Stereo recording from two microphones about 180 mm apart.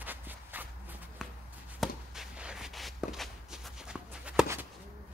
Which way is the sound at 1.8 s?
5° right (ahead or behind).